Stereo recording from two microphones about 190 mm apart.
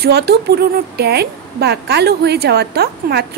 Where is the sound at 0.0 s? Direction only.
60° right (ahead or behind).